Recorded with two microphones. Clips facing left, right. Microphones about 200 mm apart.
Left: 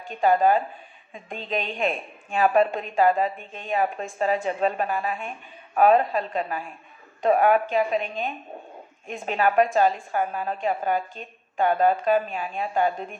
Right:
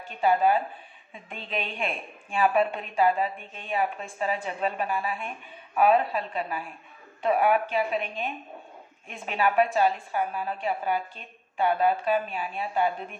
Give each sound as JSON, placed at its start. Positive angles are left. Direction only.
{"t": 0.1, "sound": "a woman's voice", "side_deg": 45}